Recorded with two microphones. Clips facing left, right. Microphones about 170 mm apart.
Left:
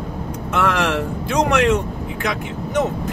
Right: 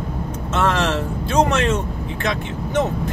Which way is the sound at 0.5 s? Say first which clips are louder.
Even; 25° right (ahead or behind).